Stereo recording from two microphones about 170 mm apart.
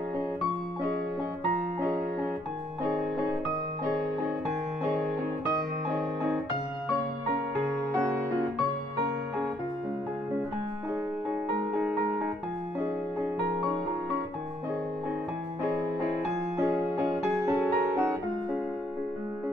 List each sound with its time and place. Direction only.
7.9 s music: 15° right (ahead or behind)
11.7 s music: 10° right (ahead or behind)
16.5 s music: 20° right (ahead or behind)